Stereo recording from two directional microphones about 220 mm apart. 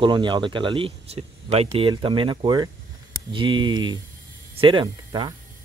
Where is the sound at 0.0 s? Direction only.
20° right (ahead or behind).